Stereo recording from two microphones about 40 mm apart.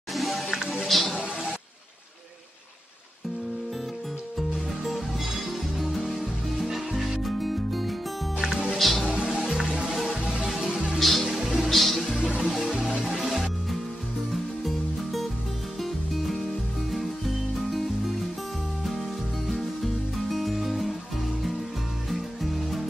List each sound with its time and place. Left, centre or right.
0.1 s music: centre
4.4 s music: centre
9.0 s music: right
10.5 s music: centre
11.3 s music: centre
11.7 s music: centre
12.2 s music: right
13.3 s music: centre
17.6 s music: centre
22.1 s music: centre